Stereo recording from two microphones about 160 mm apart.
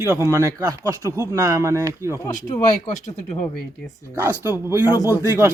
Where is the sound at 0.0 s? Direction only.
15° right (ahead or behind).